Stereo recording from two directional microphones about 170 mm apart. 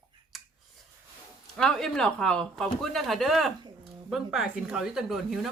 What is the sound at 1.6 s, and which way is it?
Speech, 5° left (ahead or behind).